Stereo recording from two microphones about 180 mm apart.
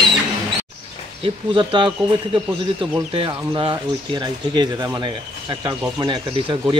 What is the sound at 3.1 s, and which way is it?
Speech, 30° right (ahead or behind).